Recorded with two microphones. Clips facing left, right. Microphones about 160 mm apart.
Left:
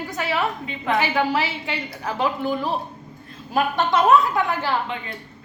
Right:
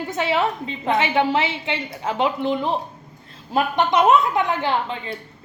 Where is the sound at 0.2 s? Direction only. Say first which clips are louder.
Right 3 dB; 25° right (ahead or behind).